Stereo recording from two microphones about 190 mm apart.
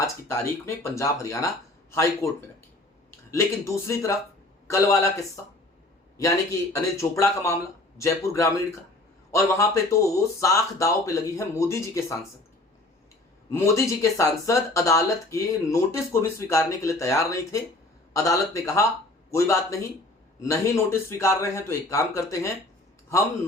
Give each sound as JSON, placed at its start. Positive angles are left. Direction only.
{"t": 0.0, "sound": "speech", "side_deg": 10}
{"t": 3.3, "sound": "speech", "side_deg": 15}
{"t": 6.1, "sound": "speech", "side_deg": 15}
{"t": 13.5, "sound": "speech", "side_deg": 15}